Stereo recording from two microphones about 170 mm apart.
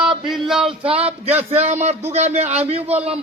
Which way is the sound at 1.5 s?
40° right (ahead or behind).